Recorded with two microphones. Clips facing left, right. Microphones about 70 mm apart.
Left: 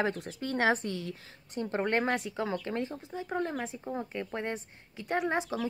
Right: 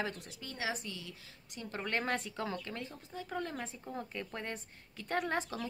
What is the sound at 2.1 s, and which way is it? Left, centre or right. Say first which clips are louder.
Speech: left 5 dB; centre.